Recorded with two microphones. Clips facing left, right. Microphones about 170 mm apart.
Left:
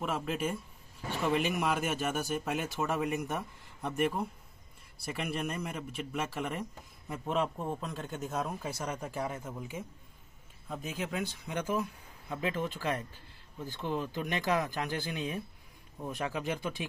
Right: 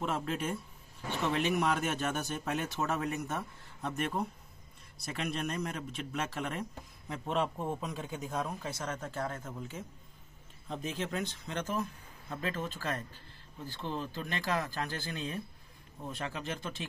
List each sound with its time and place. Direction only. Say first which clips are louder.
0.0 s a man's voice: left 1 dB; 5° left (ahead or behind)